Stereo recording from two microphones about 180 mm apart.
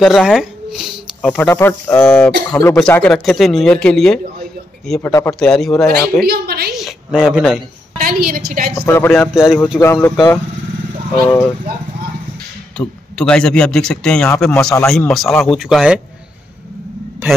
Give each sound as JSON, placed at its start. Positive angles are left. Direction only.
{"t": 0.0, "sound": "speech", "side_deg": 0}
{"t": 1.2, "sound": "speech", "side_deg": 10}
{"t": 5.0, "sound": "speech", "side_deg": 15}
{"t": 5.4, "sound": "speech", "side_deg": 5}
{"t": 6.2, "sound": "a woman's voice", "side_deg": -60}
{"t": 6.7, "sound": "a sound", "side_deg": 0}
{"t": 8.0, "sound": "a woman's voice", "side_deg": -55}
{"t": 8.7, "sound": "speech", "side_deg": 15}
{"t": 9.3, "sound": "speech", "side_deg": 0}
{"t": 10.0, "sound": "speech", "side_deg": 15}
{"t": 12.7, "sound": "speech", "side_deg": 5}